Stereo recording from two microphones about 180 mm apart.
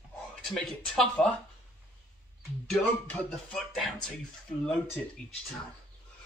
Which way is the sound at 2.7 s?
5° left (ahead or behind).